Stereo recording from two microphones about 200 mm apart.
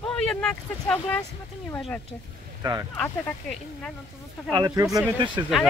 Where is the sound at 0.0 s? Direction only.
5° left (ahead or behind).